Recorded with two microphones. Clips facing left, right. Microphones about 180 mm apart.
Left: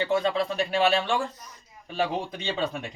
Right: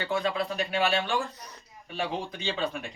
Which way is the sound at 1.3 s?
65° right (ahead or behind).